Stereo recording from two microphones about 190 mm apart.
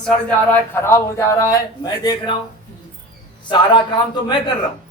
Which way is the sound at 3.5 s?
25° left (ahead or behind).